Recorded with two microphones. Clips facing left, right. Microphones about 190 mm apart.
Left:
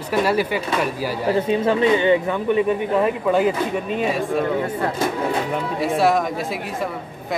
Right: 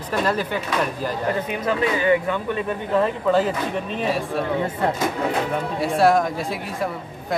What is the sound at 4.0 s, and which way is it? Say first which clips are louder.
Speech: left 2 dB; centre (ahead or behind).